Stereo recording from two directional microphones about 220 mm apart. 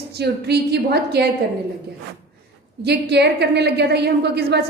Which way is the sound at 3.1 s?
50° right (ahead or behind).